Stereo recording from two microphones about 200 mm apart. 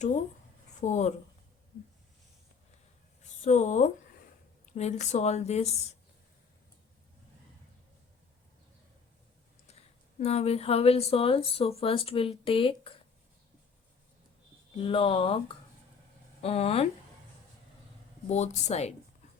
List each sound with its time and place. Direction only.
0.8 s a woman's voice: 35° left (ahead or behind)
3.4 s a woman's voice: 35° left (ahead or behind)
9.6 s speech: 30° left (ahead or behind)
14.8 s speech: 25° left (ahead or behind)
18.3 s a woman's voice: 35° left (ahead or behind)